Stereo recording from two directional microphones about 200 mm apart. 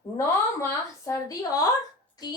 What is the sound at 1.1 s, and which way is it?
Speech, 15° left (ahead or behind).